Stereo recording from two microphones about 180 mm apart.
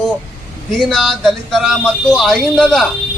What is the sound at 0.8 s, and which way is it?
Speech, centre (ahead or behind).